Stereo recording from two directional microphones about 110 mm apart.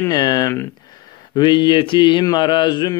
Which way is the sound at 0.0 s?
35° left (ahead or behind).